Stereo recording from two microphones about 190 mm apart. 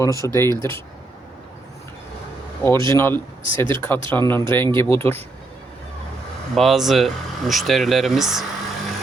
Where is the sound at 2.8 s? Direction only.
15° left (ahead or behind).